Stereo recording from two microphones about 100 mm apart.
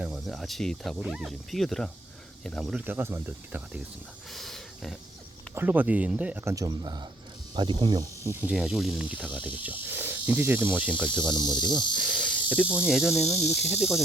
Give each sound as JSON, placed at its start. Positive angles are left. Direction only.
{"t": 0.0, "sound": "speech", "side_deg": -5}
{"t": 2.7, "sound": "speech", "side_deg": -20}
{"t": 4.3, "sound": "speech", "side_deg": 0}
{"t": 5.5, "sound": "cricket", "side_deg": -15}
{"t": 6.4, "sound": "speech", "side_deg": -30}
{"t": 6.7, "sound": "speech", "side_deg": -45}
{"t": 8.2, "sound": "speech", "side_deg": -30}
{"t": 8.4, "sound": "cricket", "side_deg": -5}
{"t": 11.3, "sound": "speech", "side_deg": 5}
{"t": 11.9, "sound": "cricket", "side_deg": -10}
{"t": 12.9, "sound": "speech", "side_deg": -5}